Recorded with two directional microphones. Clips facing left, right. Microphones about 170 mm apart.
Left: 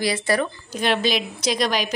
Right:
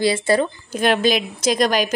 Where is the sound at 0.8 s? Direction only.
50° right (ahead or behind).